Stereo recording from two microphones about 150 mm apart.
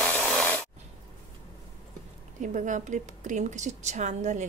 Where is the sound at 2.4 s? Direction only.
60° right (ahead or behind).